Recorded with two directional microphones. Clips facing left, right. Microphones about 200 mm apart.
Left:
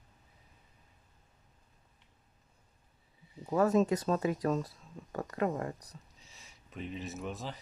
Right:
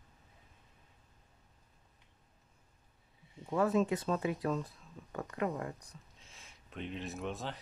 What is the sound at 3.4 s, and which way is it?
Speech, 40° left (ahead or behind).